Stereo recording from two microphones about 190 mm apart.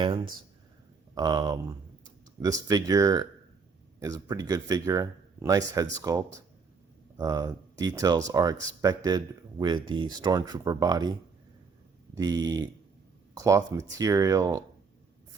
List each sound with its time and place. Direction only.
1.1 s speech: 20° right (ahead or behind)
12.1 s speech: 20° right (ahead or behind)